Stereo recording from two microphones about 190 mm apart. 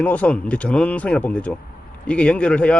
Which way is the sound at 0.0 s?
5° left (ahead or behind).